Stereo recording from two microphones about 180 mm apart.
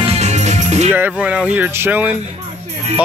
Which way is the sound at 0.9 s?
10° right (ahead or behind).